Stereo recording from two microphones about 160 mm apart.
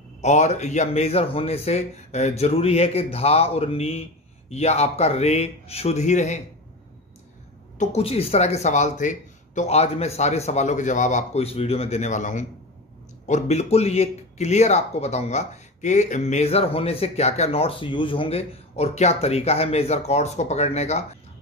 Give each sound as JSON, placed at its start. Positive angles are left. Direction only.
{"t": 0.2, "sound": "speech", "side_deg": 45}
{"t": 7.8, "sound": "speech", "side_deg": 40}